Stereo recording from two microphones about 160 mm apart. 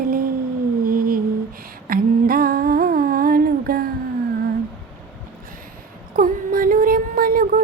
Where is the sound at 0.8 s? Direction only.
65° right (ahead or behind).